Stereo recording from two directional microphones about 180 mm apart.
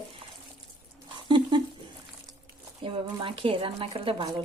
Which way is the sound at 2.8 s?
30° right (ahead or behind).